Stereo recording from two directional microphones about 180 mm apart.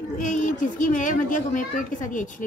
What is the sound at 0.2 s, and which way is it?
Speech, 45° left (ahead or behind).